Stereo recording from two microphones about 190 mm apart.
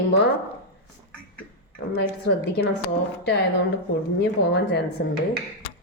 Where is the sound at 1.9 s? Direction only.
55° left (ahead or behind).